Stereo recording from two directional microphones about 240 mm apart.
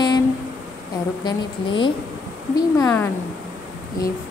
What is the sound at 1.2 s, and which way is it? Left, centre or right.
A woman's voice, centre.